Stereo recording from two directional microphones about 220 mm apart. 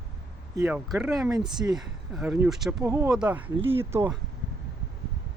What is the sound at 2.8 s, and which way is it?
Speech, 15° right (ahead or behind).